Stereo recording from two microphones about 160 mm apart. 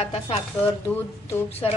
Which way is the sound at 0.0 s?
40° left (ahead or behind).